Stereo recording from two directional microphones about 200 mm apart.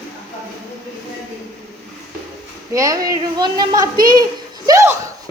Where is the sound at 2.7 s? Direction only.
15° right (ahead or behind).